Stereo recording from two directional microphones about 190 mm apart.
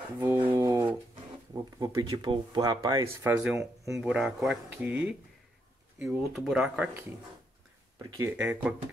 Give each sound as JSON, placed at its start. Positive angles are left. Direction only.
{"t": 0.2, "sound": "a sound", "side_deg": -15}
{"t": 1.5, "sound": "speech", "side_deg": -20}
{"t": 8.4, "sound": "speech", "side_deg": -5}